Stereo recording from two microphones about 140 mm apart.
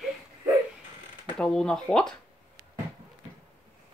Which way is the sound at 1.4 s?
5° left (ahead or behind).